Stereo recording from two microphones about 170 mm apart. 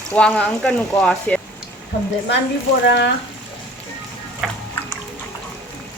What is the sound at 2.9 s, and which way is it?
Speech, 90° left.